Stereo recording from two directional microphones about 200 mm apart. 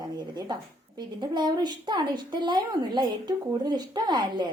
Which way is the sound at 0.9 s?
20° right (ahead or behind).